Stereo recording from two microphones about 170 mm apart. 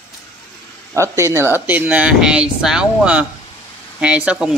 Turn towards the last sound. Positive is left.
turn(degrees=-5)  # may be behind; listen again after turning